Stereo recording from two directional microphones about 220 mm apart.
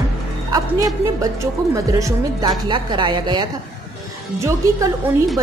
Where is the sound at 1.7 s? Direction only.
15° right (ahead or behind).